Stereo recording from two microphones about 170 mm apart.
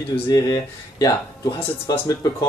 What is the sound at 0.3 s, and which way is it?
Speech, 20° left (ahead or behind).